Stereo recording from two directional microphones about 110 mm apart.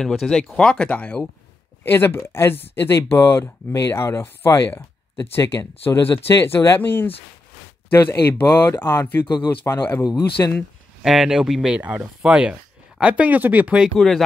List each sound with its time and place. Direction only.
0.0 s speech: 5° left (ahead or behind); by 10.5 s 25° left (ahead or behind)
11.0 s speech: 5° right (ahead or behind)
13.9 s speech: 5° left (ahead or behind)